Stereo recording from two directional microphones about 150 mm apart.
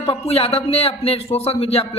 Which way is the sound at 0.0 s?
40° left (ahead or behind).